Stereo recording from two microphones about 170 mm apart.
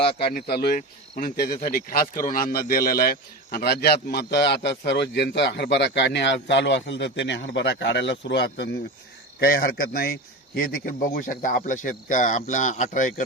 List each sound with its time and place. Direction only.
0.3 s a man's voice: 70° left (ahead or behind)
9.4 s a man's voice: 65° left (ahead or behind)